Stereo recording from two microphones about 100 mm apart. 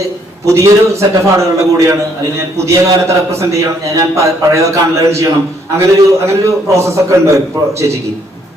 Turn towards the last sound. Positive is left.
turn(degrees=-30)  # may be behind; listen again after turning